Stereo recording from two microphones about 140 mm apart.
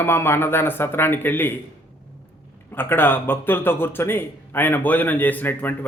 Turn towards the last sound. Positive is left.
turn(degrees=15)  # may be behind; listen again after turning